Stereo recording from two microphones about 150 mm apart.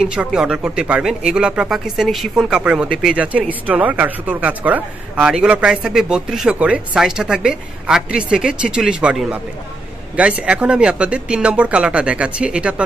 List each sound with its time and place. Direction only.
0.0 s speech: 5° right (ahead or behind)